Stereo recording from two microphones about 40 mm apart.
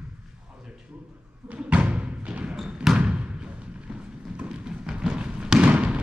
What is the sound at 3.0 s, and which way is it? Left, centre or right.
Thump, right.